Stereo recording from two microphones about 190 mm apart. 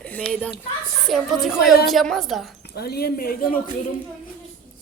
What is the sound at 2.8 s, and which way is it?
Speech, 55° left (ahead or behind).